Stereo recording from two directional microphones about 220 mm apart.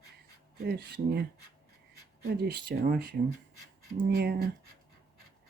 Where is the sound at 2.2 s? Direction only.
45° right (ahead or behind).